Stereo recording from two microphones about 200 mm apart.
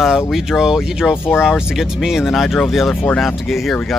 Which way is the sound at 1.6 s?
5° right (ahead or behind).